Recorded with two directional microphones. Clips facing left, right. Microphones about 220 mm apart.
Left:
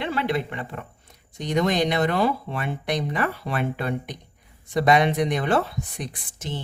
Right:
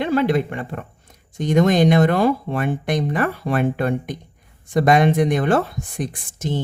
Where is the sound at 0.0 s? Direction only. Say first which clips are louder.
Right 7 dB; 45° right (ahead or behind).